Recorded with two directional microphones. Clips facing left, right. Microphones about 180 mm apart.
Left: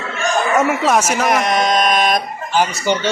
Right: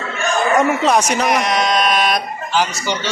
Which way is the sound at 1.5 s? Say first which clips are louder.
Left 1 dB; 50° left (ahead or behind).